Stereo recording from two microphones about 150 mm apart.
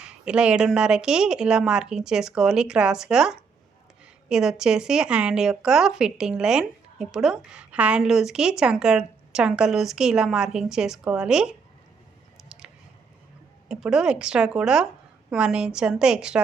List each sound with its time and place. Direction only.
0.0 s speech: 5° right (ahead or behind)
12.5 s squish: 5° right (ahead or behind)
13.7 s speech: 5° right (ahead or behind)